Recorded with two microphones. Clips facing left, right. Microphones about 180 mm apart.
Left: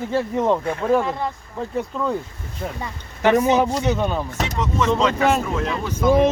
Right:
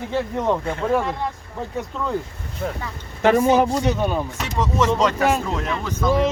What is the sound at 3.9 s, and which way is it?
Speech, 5° right (ahead or behind).